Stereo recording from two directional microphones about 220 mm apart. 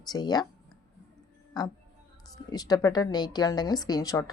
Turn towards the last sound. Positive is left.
turn(degrees=15)  # may be behind; listen again after turning